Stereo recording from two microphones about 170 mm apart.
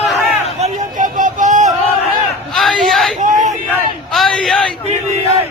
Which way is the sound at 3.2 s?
50° right (ahead or behind).